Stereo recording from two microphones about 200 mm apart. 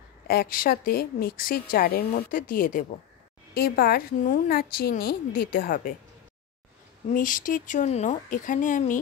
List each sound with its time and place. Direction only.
0.3 s a woman's voice: 45° left (ahead or behind)
7.2 s speech: 40° left (ahead or behind)